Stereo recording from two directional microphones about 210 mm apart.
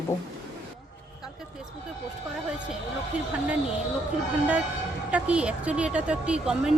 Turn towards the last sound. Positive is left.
turn(degrees=-5)  # may be behind; listen again after turning